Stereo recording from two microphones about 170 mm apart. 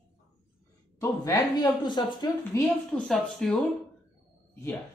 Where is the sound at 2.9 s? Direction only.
5° left (ahead or behind).